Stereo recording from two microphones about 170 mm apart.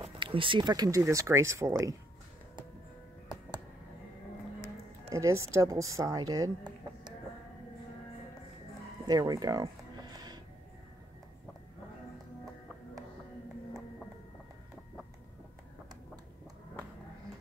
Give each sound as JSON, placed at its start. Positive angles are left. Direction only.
{"t": 0.0, "sound": "speech", "side_deg": -30}
{"t": 5.1, "sound": "speech", "side_deg": -20}
{"t": 9.0, "sound": "music", "side_deg": -20}